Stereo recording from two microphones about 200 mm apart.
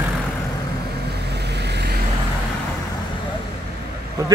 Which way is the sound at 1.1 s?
55° right (ahead or behind).